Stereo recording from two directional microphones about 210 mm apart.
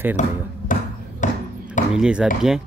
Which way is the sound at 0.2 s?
35° left (ahead or behind).